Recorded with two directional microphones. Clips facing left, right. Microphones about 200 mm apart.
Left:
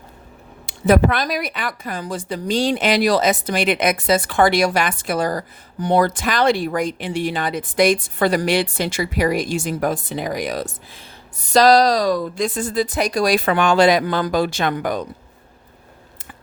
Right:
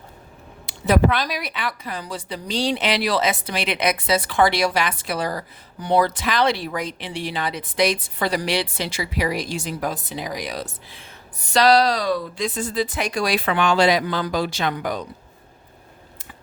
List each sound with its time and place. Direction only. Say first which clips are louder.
0.6 s a woman's voice: left 3 dB; 50° left (ahead or behind)